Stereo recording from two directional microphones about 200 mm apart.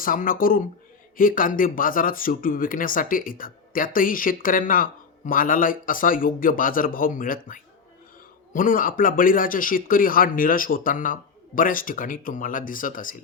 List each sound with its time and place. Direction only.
0.0 s speech: 45° left (ahead or behind)